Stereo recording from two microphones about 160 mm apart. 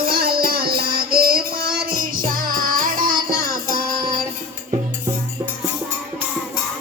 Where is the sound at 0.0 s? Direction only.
70° right (ahead or behind).